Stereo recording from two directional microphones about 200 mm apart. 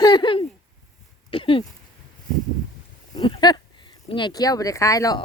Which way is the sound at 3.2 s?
20° left (ahead or behind).